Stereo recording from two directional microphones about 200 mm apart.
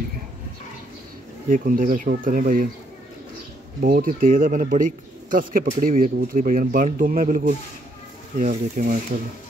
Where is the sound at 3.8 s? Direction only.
45° right (ahead or behind).